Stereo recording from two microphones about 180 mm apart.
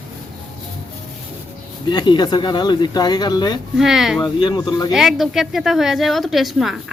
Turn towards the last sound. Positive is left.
turn(degrees=0)  # may be behind; listen again after turning